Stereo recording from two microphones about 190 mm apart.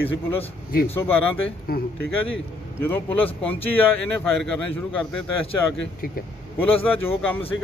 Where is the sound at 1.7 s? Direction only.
50° left (ahead or behind).